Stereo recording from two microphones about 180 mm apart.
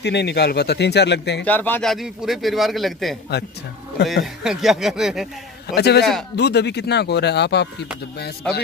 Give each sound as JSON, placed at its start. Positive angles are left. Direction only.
{"t": 0.0, "sound": "speech", "side_deg": 70}
{"t": 1.4, "sound": "a man's voice", "side_deg": 10}
{"t": 5.8, "sound": "a man's voice", "side_deg": 65}